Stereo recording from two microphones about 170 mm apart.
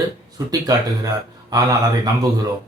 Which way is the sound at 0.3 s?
20° right (ahead or behind).